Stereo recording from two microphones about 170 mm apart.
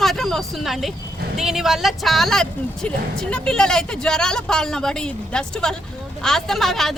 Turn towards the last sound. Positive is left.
turn(degrees=0)  # may be behind; listen again after turning